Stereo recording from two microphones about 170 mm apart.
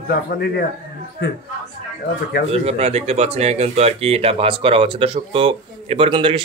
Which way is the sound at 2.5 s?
35° right (ahead or behind).